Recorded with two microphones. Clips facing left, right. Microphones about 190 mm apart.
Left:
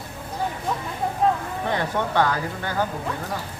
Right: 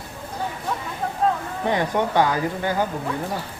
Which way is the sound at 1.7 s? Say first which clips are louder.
Right 3 dB; 15° right (ahead or behind).